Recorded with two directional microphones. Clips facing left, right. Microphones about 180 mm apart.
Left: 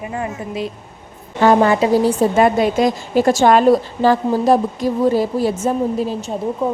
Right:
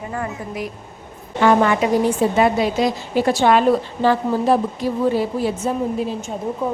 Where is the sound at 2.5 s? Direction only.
50° left (ahead or behind).